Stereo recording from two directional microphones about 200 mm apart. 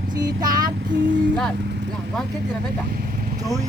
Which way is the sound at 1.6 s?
55° right (ahead or behind).